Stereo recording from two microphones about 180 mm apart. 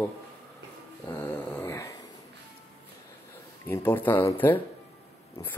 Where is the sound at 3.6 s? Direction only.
10° left (ahead or behind).